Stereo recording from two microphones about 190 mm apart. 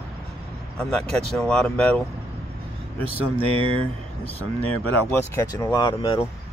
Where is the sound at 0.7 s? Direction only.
5° left (ahead or behind).